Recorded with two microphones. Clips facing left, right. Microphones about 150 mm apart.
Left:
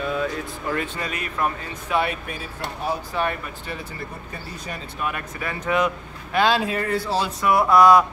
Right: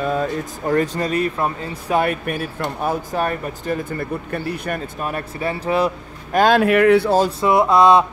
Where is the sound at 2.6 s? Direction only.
45° right (ahead or behind); by 4.8 s 60° right (ahead or behind).